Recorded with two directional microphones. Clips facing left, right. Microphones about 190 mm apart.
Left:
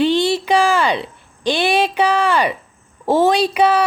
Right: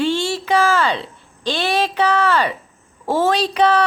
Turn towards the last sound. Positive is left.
turn(degrees=10)  # may be behind; listen again after turning